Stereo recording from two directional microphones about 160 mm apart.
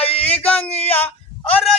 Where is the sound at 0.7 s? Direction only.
40° left (ahead or behind).